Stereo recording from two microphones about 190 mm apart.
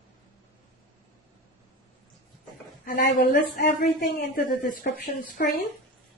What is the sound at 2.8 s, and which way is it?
A man's voice, 50° left (ahead or behind).